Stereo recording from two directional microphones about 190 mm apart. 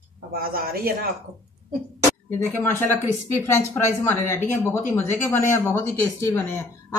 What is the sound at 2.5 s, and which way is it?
Speech, 10° left (ahead or behind).